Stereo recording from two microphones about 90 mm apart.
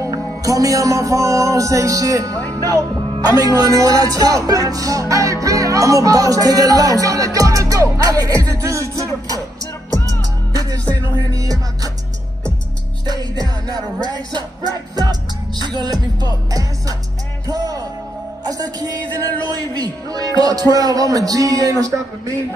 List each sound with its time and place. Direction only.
0.0 s music: 35° right (ahead or behind)
2.6 s speech: 40° right (ahead or behind)
10.5 s music: 45° right (ahead or behind)
13.0 s music: 50° right (ahead or behind)
18.5 s speech: 45° right (ahead or behind)